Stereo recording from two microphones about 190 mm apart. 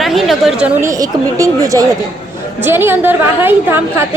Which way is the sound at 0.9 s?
20° right (ahead or behind).